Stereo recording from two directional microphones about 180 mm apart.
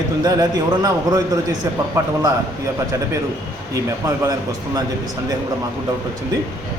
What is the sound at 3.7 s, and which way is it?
Speech, 15° right (ahead or behind).